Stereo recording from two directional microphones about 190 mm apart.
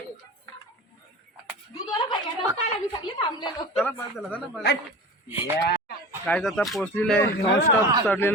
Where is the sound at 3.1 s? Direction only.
25° left (ahead or behind).